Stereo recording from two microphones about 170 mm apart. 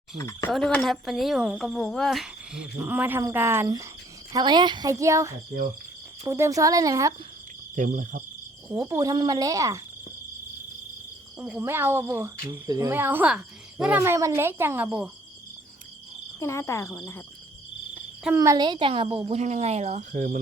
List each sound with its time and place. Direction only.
0.2 s speech: 15° left (ahead or behind)
0.5 s speech: 5° left (ahead or behind); by 7.1 s 20° right (ahead or behind)
7.8 s cricket: 50° right (ahead or behind)
8.7 s speech: 15° right (ahead or behind)
11.3 s speech: 10° right (ahead or behind)
16.4 s speech: 15° left (ahead or behind)
18.3 s speech: 20° right (ahead or behind); by 20.4 s 50° right (ahead or behind)